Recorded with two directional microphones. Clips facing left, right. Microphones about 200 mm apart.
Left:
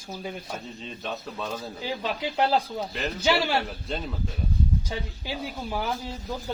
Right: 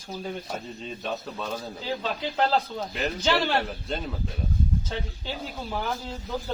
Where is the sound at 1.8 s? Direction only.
15° left (ahead or behind).